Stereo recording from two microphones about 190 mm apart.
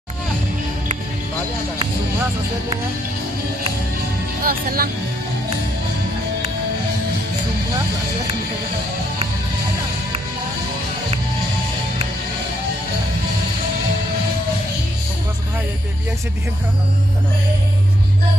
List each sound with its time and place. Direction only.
4.4 s speech: 50° right (ahead or behind)